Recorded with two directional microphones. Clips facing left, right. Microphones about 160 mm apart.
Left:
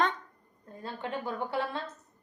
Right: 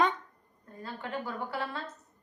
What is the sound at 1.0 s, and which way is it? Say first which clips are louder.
Speech: left 2 dB; 25° left (ahead or behind).